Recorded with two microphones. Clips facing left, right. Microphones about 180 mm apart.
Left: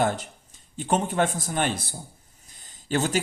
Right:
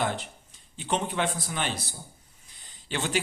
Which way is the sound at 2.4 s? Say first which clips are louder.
Left 8 dB; 45° left (ahead or behind).